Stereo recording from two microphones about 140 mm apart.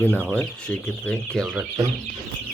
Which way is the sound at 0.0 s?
15° left (ahead or behind).